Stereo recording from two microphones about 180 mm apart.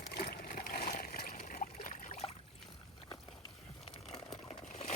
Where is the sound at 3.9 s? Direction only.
35° left (ahead or behind).